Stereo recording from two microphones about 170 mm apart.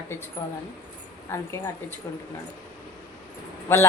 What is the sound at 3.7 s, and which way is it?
Speech, 15° left (ahead or behind).